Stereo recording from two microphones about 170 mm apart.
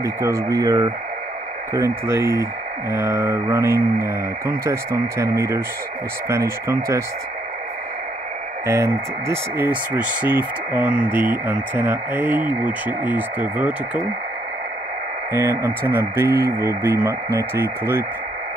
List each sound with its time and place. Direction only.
0.0 s speech: 20° right (ahead or behind)
8.6 s speech: 15° right (ahead or behind)
15.3 s speech: 15° right (ahead or behind)